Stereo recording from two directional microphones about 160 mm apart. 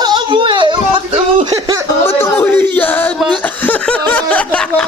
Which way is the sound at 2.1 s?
15° left (ahead or behind).